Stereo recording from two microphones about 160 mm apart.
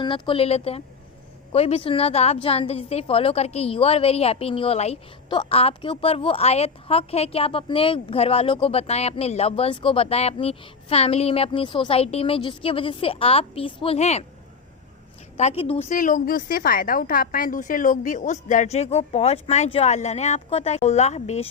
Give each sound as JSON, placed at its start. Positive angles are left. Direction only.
{"t": 0.0, "sound": "a woman's voice", "side_deg": 30}
{"t": 15.4, "sound": "a woman's voice", "side_deg": 40}
{"t": 15.9, "sound": "a woman's voice", "side_deg": 55}